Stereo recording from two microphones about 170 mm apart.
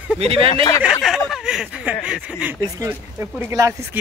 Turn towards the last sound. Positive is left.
turn(degrees=-15)  # may be behind; listen again after turning